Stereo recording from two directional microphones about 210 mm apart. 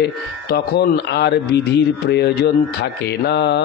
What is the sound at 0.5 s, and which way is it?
Speech, 50° left (ahead or behind).